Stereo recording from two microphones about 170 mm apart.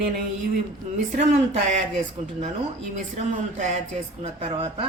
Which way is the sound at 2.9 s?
45° right (ahead or behind).